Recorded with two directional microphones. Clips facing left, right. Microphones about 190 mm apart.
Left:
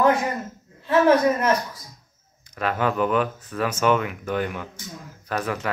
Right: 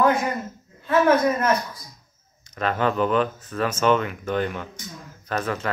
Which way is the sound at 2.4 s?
10° left (ahead or behind).